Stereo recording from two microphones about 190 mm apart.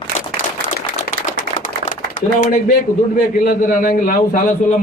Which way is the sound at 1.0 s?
45° left (ahead or behind).